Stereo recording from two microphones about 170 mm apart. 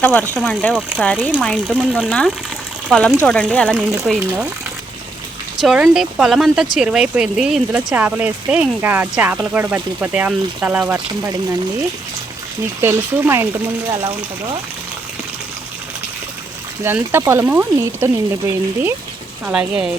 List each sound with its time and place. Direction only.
0.0 s speech: 5° left (ahead or behind)
1.6 s speech: 5° right (ahead or behind)
3.2 s speech: 5° left (ahead or behind)
3.8 s speech: 10° right (ahead or behind)
5.5 s speech: 5° right (ahead or behind)
12.8 s speech: 15° right (ahead or behind)
13.9 s speech: 30° right (ahead or behind)
16.8 s speech: 15° right (ahead or behind)